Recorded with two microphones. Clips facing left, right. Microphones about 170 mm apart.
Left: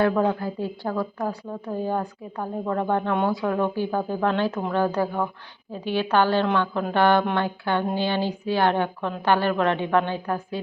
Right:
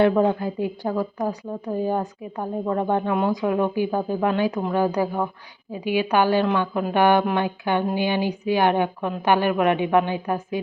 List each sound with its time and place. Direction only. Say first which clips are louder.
0.0 s a woman's voice: right 3 dB; 20° right (ahead or behind)